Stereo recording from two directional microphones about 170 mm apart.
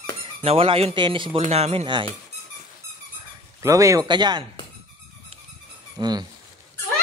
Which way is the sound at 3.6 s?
20° right (ahead or behind).